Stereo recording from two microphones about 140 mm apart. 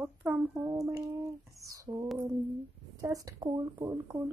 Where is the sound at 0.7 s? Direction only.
25° right (ahead or behind).